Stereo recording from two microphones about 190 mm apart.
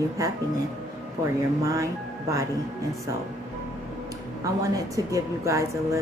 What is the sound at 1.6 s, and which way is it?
Speech, 15° right (ahead or behind).